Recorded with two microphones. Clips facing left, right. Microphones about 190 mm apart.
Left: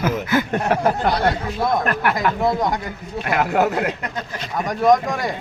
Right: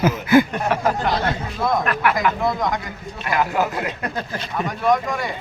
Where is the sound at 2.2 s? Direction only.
30° left (ahead or behind).